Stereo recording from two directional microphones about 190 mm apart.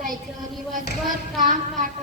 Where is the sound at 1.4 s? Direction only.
45° right (ahead or behind).